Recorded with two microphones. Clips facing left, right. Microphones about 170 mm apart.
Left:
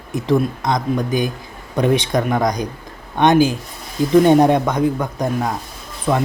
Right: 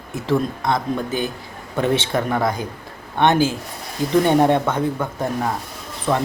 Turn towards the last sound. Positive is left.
turn(degrees=10)  # may be behind; listen again after turning